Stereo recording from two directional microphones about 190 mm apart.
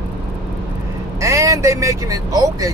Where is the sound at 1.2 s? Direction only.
15° right (ahead or behind).